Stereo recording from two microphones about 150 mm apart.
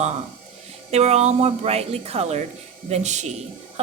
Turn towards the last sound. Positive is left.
turn(degrees=-50)  # may be behind; listen again after turning